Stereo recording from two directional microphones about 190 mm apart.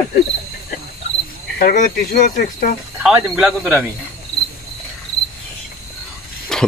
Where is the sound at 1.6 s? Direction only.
45° left (ahead or behind).